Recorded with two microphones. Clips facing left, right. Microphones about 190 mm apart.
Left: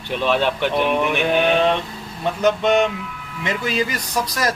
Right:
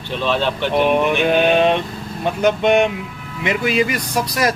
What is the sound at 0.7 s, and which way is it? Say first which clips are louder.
Speech: right 3 dB; 15° right (ahead or behind).